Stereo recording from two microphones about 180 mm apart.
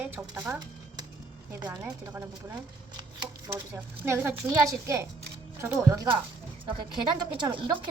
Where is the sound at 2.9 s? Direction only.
20° right (ahead or behind).